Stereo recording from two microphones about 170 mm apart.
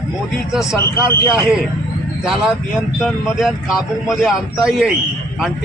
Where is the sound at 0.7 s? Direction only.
15° left (ahead or behind).